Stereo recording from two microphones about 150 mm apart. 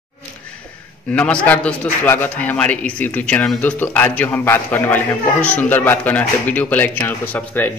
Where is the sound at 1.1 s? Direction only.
10° left (ahead or behind).